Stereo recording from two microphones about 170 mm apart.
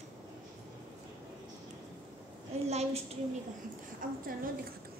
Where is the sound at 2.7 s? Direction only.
40° right (ahead or behind).